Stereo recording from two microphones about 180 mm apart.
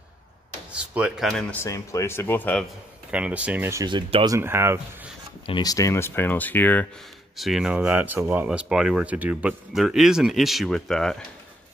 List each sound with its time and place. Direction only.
0.7 s speech: 5° right (ahead or behind)
1.5 s speech: 15° left (ahead or behind)
3.1 s speech: 5° right (ahead or behind)
3.8 s speech: 25° right (ahead or behind)
4.4 s speech: 15° right (ahead or behind)
5.5 s speech: 20° left (ahead or behind)
7.3 s speech: centre (ahead or behind)